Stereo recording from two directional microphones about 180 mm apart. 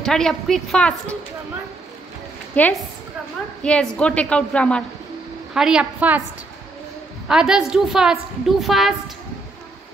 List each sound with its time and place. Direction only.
0.0 s a woman's voice: centre (ahead or behind)
2.6 s a woman's voice: 10° left (ahead or behind); by 6.2 s 10° right (ahead or behind)
7.2 s a woman's voice: 5° right (ahead or behind)